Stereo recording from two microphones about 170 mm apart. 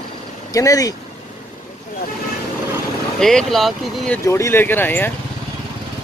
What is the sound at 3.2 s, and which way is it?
Speech, 5° left (ahead or behind).